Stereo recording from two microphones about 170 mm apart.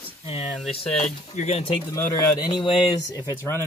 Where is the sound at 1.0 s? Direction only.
40° left (ahead or behind).